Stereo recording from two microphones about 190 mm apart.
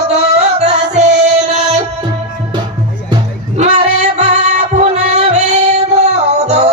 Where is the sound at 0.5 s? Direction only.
35° right (ahead or behind).